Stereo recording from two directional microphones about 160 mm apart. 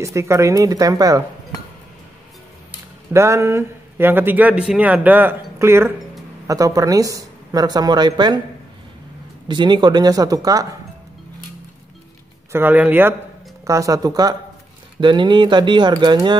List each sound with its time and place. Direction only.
0.0 s speech: 20° right (ahead or behind)
3.1 s speech: 20° right (ahead or behind)
9.5 s speech: 30° right (ahead or behind)
12.5 s speech: 10° right (ahead or behind); by 16.3 s 25° right (ahead or behind)